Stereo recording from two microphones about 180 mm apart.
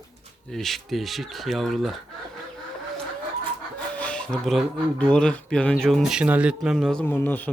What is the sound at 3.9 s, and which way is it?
Speech, 5° left (ahead or behind).